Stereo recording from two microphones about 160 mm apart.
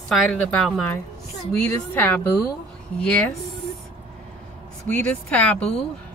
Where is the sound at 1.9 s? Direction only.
10° left (ahead or behind).